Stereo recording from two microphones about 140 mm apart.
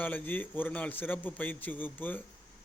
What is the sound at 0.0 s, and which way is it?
Speech, 10° left (ahead or behind).